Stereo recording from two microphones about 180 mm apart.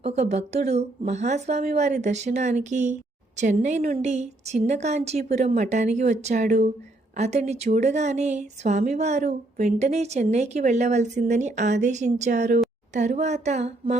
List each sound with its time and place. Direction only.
0.0 s a woman's voice: 40° right (ahead or behind)